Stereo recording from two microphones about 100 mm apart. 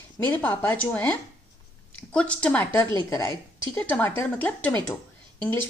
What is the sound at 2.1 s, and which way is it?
A woman's voice, 10° left (ahead or behind).